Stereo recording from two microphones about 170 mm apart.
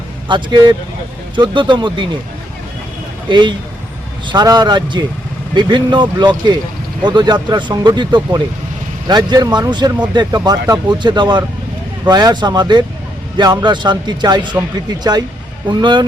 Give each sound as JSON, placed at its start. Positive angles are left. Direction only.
{"t": 0.3, "sound": "speech", "side_deg": -25}
{"t": 3.2, "sound": "speech", "side_deg": -25}
{"t": 15.7, "sound": "speech", "side_deg": -25}